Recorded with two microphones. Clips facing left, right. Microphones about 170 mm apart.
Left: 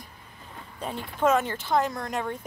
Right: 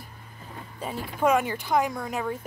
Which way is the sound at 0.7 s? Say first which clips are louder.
Even; 5° right (ahead or behind).